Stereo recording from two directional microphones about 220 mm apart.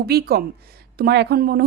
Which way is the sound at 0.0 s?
45° right (ahead or behind).